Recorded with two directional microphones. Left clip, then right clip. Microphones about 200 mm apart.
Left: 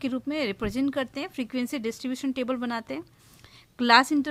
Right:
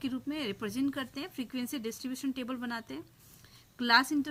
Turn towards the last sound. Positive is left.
turn(degrees=50)  # may be behind; listen again after turning